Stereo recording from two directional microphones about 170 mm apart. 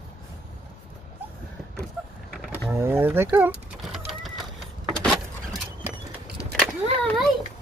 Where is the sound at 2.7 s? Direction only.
15° right (ahead or behind).